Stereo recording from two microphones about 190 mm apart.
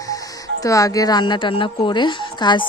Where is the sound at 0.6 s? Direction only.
15° left (ahead or behind).